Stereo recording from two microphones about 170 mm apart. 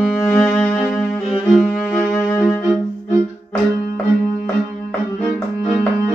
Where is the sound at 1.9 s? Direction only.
10° left (ahead or behind).